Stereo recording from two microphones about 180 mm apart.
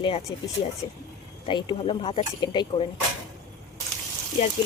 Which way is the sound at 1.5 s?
25° left (ahead or behind).